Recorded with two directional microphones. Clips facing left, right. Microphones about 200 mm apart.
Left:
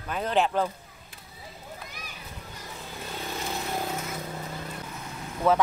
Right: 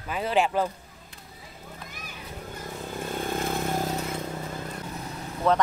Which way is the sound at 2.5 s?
50° right (ahead or behind).